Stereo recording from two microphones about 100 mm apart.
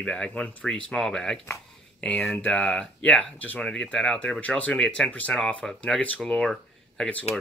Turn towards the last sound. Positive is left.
turn(degrees=10)  # may be behind; listen again after turning